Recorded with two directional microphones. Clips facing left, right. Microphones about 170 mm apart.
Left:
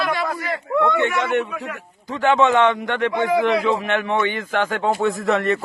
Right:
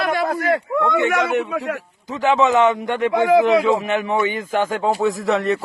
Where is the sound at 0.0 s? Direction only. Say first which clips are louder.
Right 3 dB; 50° right (ahead or behind).